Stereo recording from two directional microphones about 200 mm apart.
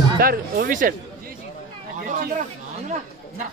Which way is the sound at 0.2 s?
45° right (ahead or behind).